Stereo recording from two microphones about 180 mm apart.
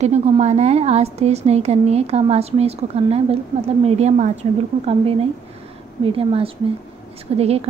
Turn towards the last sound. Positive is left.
turn(degrees=-35)  # may be behind; listen again after turning